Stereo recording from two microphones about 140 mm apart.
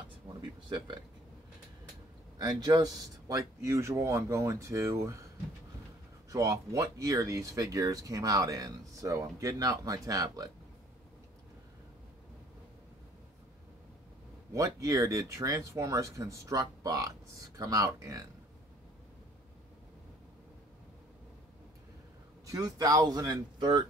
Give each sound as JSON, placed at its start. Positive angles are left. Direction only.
{"t": 0.4, "sound": "a sound", "side_deg": -35}
{"t": 2.3, "sound": "speech", "side_deg": -30}
{"t": 6.3, "sound": "speech", "side_deg": -25}
{"t": 14.5, "sound": "speech", "side_deg": -25}
{"t": 22.5, "sound": "speech", "side_deg": -25}